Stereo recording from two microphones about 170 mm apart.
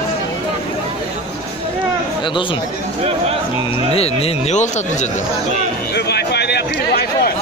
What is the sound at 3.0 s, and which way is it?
Speech, 35° right (ahead or behind).